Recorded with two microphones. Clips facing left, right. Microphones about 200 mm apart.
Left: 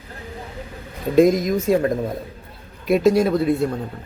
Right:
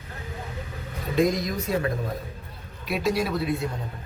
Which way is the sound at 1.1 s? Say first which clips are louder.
Left 8 dB; 45° left (ahead or behind).